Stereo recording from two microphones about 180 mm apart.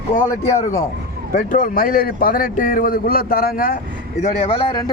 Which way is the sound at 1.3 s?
50° left (ahead or behind).